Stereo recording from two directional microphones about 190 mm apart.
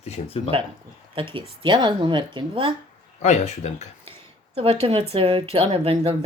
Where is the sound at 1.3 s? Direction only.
25° right (ahead or behind).